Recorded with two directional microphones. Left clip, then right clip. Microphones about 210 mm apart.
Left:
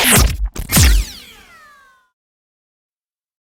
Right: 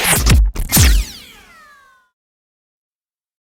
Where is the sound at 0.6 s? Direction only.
Centre (ahead or behind).